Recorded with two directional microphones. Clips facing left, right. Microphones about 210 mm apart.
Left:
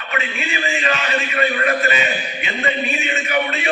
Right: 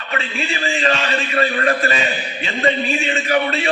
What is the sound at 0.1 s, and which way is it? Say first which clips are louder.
A man's voice: right 1 dB; 30° right (ahead or behind).